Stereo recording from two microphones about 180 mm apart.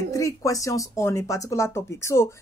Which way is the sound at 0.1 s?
20° left (ahead or behind).